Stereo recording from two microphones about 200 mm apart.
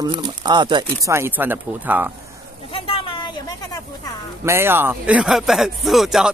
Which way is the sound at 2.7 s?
25° left (ahead or behind).